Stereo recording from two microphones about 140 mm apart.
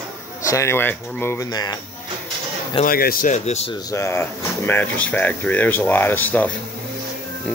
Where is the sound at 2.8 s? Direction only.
90° left; by 3.7 s 50° left (ahead or behind).